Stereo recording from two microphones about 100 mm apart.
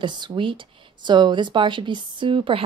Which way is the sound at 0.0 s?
50° right (ahead or behind).